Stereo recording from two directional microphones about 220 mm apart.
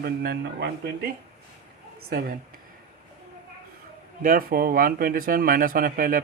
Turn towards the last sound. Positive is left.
turn(degrees=-40)  # may be behind; listen again after turning